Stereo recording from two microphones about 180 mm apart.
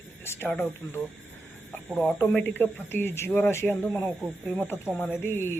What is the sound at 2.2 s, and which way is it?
Speech, 10° left (ahead or behind).